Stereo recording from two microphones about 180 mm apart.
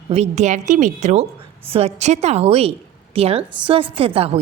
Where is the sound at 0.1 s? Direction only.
40° right (ahead or behind).